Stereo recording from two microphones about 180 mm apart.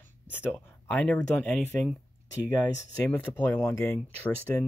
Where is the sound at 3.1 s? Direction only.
10° left (ahead or behind).